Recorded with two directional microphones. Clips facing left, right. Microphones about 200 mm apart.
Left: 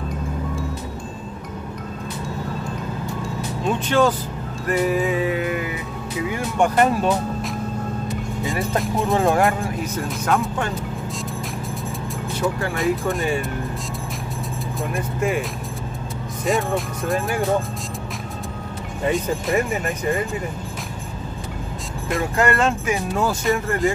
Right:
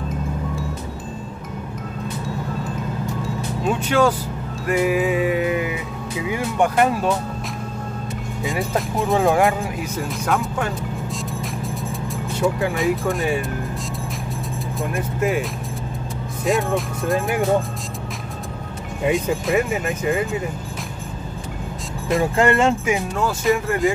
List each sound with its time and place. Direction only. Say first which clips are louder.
3.6 s music: even; 5° right (ahead or behind)
6.3 s speech: even; 5° right (ahead or behind)
8.7 s speech: even; centre (ahead or behind)
12.7 s speech: right 1 dB; centre (ahead or behind)
14.8 s speech: right 1 dB; centre (ahead or behind)
16.4 s speech: right 1 dB; centre (ahead or behind)
19.0 s speech: right 2 dB; centre (ahead or behind)
22.3 s speech: right 1 dB; 25° right (ahead or behind)
23.1 s speech: even; centre (ahead or behind)